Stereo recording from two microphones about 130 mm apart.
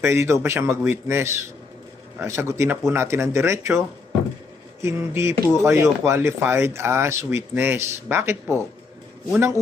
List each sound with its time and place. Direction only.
0.0 s speech: 20° right (ahead or behind)